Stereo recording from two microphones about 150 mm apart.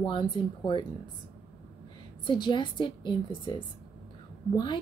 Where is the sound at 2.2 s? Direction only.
30° left (ahead or behind).